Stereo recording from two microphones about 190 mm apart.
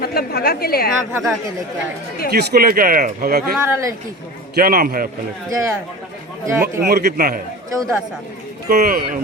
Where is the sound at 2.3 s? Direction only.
55° right (ahead or behind).